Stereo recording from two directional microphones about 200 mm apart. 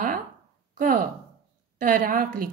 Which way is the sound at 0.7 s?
40° right (ahead or behind).